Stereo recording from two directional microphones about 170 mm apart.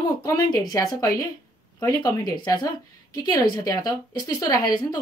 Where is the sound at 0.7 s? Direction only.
25° left (ahead or behind).